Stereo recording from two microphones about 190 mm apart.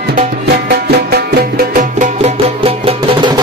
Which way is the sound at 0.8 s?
55° right (ahead or behind).